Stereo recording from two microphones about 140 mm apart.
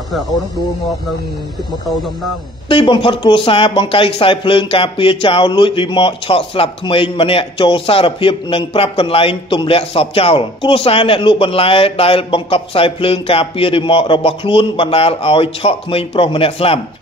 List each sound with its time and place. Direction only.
2.7 s speech: 40° left (ahead or behind)